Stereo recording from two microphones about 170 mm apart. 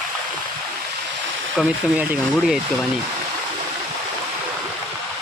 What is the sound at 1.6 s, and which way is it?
Speech, 5° right (ahead or behind).